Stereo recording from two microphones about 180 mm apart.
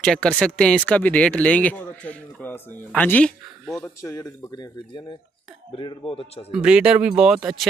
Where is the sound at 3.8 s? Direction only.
15° left (ahead or behind).